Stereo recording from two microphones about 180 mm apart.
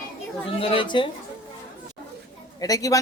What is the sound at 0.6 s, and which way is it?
Speech, 30° left (ahead or behind).